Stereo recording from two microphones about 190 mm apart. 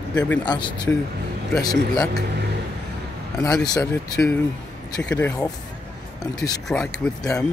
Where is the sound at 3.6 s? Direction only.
20° left (ahead or behind).